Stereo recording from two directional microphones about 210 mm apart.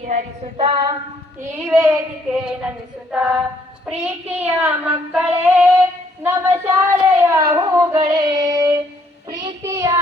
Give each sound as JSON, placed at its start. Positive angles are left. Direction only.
{"t": 0.0, "sound": "female singing", "side_deg": -40}
{"t": 0.5, "sound": "female singing", "side_deg": -25}
{"t": 1.6, "sound": "child singing", "side_deg": -10}
{"t": 2.4, "sound": "a sound", "side_deg": -5}
{"t": 3.8, "sound": "child singing", "side_deg": -10}